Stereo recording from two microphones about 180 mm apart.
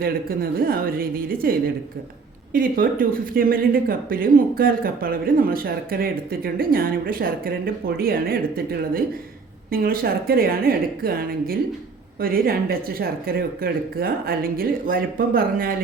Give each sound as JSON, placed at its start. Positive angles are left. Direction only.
{"t": 0.0, "sound": "speech", "side_deg": -55}